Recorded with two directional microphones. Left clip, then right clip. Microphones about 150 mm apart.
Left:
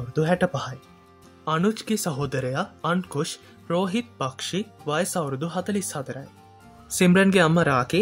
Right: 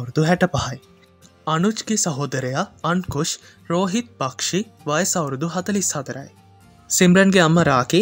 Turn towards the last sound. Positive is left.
turn(degrees=-35)  # may be behind; listen again after turning